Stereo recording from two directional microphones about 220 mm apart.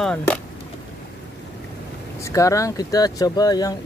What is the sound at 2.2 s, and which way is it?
Speech, 15° left (ahead or behind).